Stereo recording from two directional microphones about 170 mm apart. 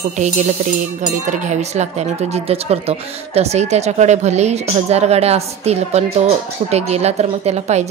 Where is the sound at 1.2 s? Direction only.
45° right (ahead or behind).